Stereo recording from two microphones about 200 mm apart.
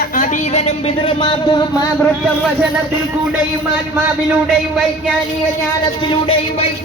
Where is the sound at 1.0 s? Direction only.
25° left (ahead or behind).